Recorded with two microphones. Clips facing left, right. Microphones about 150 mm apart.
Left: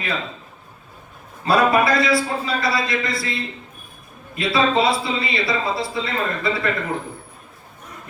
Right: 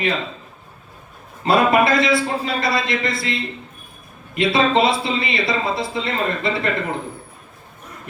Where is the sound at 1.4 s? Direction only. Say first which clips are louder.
Right 1 dB; 20° right (ahead or behind).